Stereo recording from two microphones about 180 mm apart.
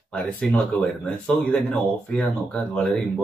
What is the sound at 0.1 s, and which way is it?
Speech, 5° left (ahead or behind).